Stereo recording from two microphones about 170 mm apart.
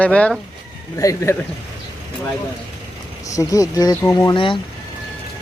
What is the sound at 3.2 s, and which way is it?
Speech, 20° left (ahead or behind).